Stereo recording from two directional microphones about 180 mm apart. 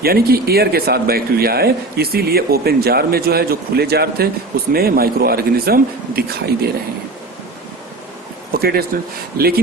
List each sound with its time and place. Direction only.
0.0 s speech: 60° right (ahead or behind)
8.5 s speech: 60° right (ahead or behind)